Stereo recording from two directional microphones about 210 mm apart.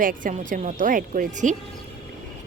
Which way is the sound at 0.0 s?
40° right (ahead or behind).